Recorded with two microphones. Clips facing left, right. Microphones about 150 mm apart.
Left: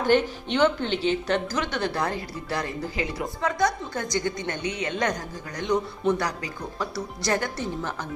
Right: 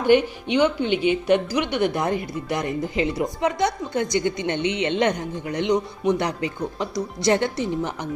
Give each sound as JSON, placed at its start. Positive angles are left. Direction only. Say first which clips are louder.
{"t": 0.0, "sound": "speech", "louder": "right 4 dB", "side_deg": -15}